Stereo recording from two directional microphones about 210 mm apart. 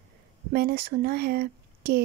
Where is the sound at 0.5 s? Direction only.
45° right (ahead or behind).